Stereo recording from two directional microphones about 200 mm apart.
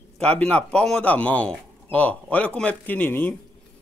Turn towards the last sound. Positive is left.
turn(degrees=10)  # may be behind; listen again after turning